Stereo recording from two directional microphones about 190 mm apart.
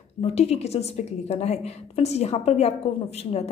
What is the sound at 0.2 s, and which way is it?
A woman's voice, 35° left (ahead or behind).